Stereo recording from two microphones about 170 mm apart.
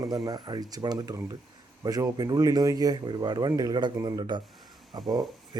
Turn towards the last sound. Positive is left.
turn(degrees=-25)  # may be behind; listen again after turning